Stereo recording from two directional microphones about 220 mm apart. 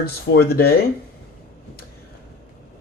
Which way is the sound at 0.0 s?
45° left (ahead or behind).